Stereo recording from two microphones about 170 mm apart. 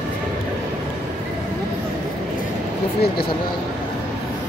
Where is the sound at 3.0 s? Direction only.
65° left (ahead or behind).